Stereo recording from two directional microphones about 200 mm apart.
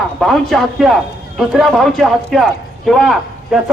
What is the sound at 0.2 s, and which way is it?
A man's voice, centre (ahead or behind).